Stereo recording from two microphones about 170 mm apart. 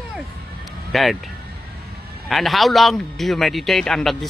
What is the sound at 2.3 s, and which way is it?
A man's voice, centre (ahead or behind).